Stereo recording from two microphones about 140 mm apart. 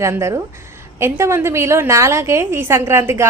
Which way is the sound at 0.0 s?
20° right (ahead or behind).